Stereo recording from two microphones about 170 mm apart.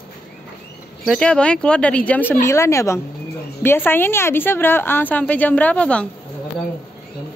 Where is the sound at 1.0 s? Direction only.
5° left (ahead or behind).